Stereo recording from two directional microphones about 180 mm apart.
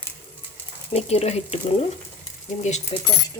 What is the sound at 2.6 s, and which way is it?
Speech, 40° left (ahead or behind).